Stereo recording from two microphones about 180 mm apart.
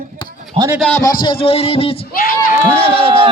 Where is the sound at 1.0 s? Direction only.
25° left (ahead or behind).